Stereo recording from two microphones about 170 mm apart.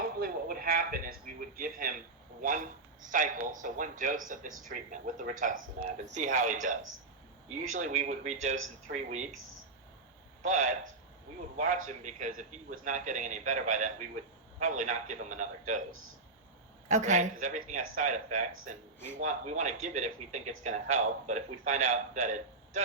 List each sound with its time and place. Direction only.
0.0 s a sound: 60° right (ahead or behind)
2.4 s speech: 50° right (ahead or behind)
10.4 s speech: 45° right (ahead or behind)
16.9 s speech: 45° right (ahead or behind)